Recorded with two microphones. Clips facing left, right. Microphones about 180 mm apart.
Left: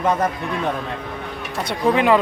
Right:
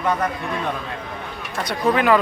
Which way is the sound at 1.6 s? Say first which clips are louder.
Left 1 dB; 25° left (ahead or behind).